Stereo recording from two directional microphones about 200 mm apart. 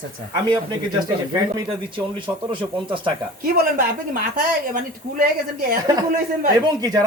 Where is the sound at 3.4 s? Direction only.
45° right (ahead or behind).